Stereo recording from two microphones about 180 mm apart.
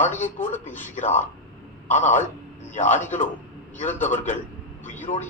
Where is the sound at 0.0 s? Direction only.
40° left (ahead or behind).